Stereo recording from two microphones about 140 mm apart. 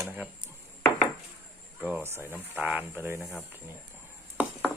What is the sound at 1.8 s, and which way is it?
Speech, 10° right (ahead or behind).